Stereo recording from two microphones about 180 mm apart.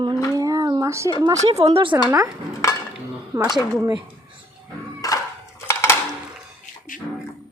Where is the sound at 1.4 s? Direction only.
35° right (ahead or behind).